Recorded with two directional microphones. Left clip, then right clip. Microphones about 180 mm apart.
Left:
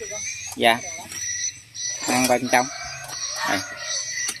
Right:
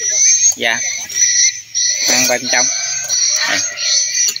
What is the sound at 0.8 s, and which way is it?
Cricket, 55° left (ahead or behind).